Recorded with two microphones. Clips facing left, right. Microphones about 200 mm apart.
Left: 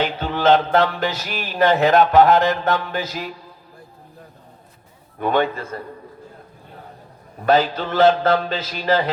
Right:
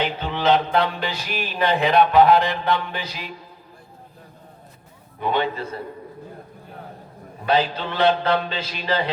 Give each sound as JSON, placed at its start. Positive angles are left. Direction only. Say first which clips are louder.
{"t": 0.0, "sound": "music", "louder": "left 3 dB", "side_deg": 45}
{"t": 5.2, "sound": "music", "louder": "left 3 dB", "side_deg": 50}
{"t": 7.4, "sound": "music", "louder": "left 4 dB", "side_deg": 45}